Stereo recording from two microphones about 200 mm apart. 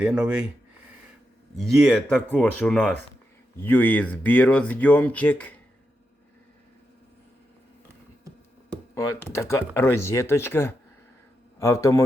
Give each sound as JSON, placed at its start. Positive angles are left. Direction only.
{"t": 0.0, "sound": "speech", "side_deg": -5}
{"t": 1.5, "sound": "speech", "side_deg": 0}
{"t": 9.4, "sound": "speech", "side_deg": 15}